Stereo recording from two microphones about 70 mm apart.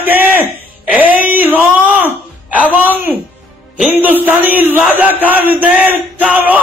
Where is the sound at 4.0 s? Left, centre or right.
Right.